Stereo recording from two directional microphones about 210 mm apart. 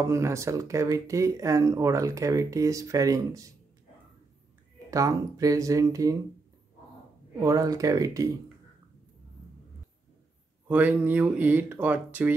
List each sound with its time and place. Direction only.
0.0 s speech: 15° right (ahead or behind)
4.9 s speech: 15° right (ahead or behind)
7.4 s speech: 15° right (ahead or behind)
10.7 s speech: 5° right (ahead or behind)